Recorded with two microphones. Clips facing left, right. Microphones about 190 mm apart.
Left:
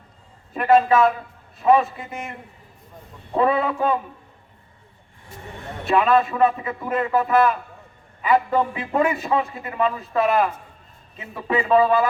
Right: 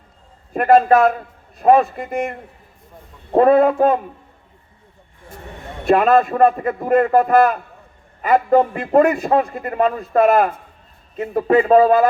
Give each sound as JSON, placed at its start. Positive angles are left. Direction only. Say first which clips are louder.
{"t": 0.5, "sound": "a man's voice", "louder": "right 4 dB", "side_deg": -45}
{"t": 5.9, "sound": "a man's voice", "louder": "right 4 dB", "side_deg": -45}